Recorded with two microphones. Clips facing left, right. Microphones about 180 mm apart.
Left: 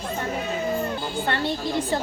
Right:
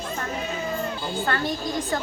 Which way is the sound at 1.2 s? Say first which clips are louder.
Even; 25° left (ahead or behind).